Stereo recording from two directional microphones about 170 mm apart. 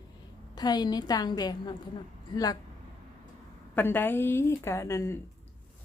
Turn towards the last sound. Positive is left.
turn(degrees=15)  # may be behind; listen again after turning